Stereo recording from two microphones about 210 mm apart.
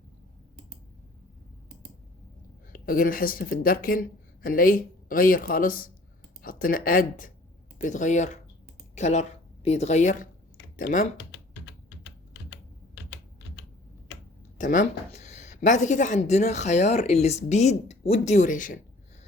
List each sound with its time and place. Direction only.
2.7 s speech: 40° left (ahead or behind)
14.6 s speech: 40° left (ahead or behind)